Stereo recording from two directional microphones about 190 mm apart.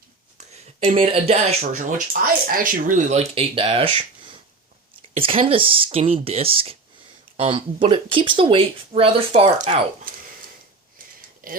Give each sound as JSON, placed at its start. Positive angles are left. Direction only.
{"t": 0.3, "sound": "speech", "side_deg": -35}
{"t": 11.4, "sound": "speech", "side_deg": -45}